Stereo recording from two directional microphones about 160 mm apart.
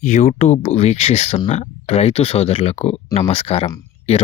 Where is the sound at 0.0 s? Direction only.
45° left (ahead or behind).